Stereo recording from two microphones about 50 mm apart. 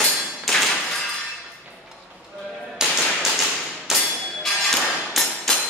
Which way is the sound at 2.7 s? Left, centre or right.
Centre.